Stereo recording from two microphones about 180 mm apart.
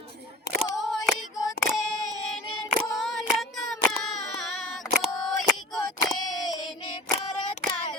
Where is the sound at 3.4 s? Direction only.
Centre (ahead or behind).